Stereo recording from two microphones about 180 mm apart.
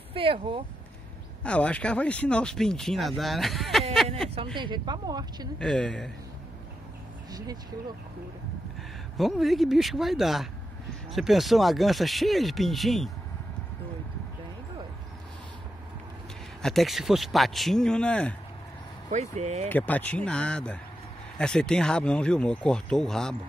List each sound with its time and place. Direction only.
0.1 s speech: 30° right (ahead or behind)
1.4 s speech: 5° left (ahead or behind)
4.6 s a woman's voice: 25° right (ahead or behind)
5.6 s speech: 5° left (ahead or behind)
9.1 s speech: centre (ahead or behind)
16.6 s speech: centre (ahead or behind)
19.0 s speech: 40° right (ahead or behind)
19.7 s a man's voice: 10° left (ahead or behind)